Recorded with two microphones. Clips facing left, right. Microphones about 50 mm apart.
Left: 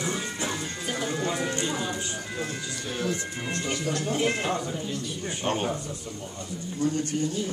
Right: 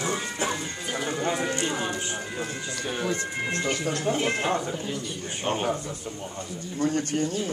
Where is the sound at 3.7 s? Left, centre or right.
Right.